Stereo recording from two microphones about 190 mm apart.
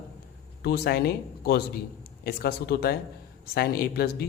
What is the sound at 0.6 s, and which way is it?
Speech, 55° left (ahead or behind).